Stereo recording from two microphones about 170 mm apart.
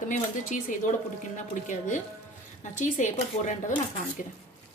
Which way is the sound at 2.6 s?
45° left (ahead or behind).